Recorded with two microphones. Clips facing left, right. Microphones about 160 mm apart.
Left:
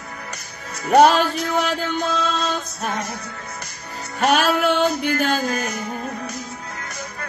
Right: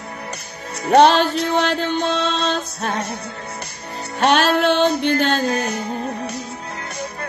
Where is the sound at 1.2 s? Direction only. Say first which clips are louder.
Right 3 dB; 30° right (ahead or behind).